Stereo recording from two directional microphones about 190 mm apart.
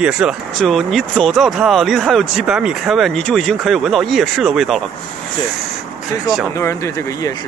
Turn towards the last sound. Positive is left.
turn(degrees=15)  # may be behind; listen again after turning